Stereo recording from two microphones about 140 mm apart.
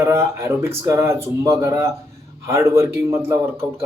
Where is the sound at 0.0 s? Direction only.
20° right (ahead or behind).